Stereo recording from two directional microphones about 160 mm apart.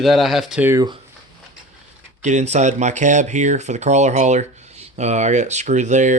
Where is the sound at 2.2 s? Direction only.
45° right (ahead or behind).